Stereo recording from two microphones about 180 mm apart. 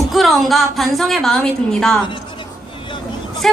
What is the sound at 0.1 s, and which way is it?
Speech, centre (ahead or behind).